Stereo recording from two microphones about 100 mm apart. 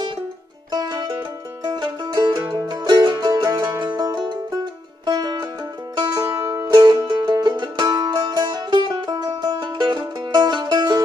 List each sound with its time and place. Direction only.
0.7 s music: 45° right (ahead or behind)
3.8 s music: 50° right (ahead or behind)